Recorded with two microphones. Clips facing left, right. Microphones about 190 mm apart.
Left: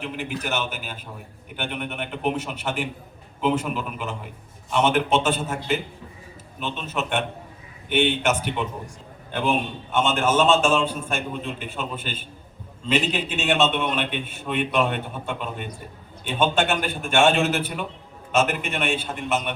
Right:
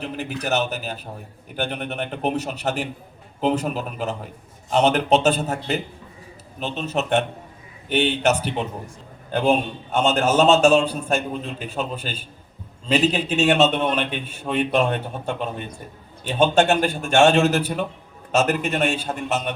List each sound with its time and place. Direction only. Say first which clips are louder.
0.0 s a man's voice: right 2 dB; 40° right (ahead or behind)